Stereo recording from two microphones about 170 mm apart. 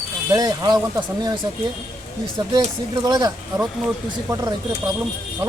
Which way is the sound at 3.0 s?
25° right (ahead or behind).